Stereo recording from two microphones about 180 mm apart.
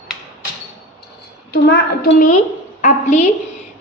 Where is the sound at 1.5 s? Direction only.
60° left (ahead or behind).